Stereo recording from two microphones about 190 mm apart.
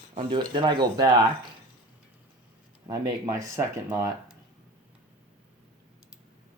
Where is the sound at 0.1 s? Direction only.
25° right (ahead or behind).